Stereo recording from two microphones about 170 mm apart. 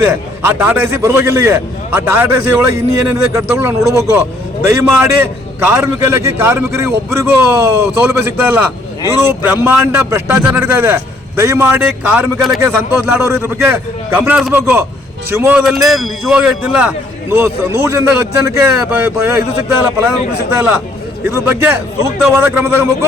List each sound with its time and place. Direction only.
0.0 s a man's voice: 15° right (ahead or behind)
21.2 s a man's voice: 15° right (ahead or behind)